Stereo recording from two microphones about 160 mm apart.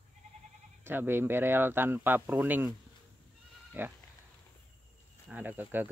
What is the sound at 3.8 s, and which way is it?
Speech, 10° right (ahead or behind).